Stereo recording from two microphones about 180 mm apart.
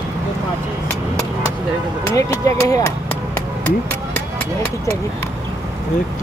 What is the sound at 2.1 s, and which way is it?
Music, 20° left (ahead or behind).